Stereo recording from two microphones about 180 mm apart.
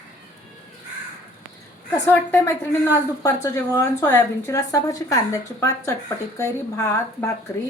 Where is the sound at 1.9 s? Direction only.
15° left (ahead or behind).